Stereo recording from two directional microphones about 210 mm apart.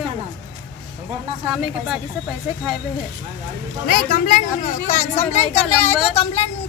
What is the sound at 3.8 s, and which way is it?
A woman's voice, 45° left (ahead or behind).